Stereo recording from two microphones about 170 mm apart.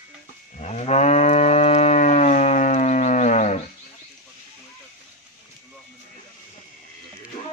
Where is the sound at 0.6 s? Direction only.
40° left (ahead or behind).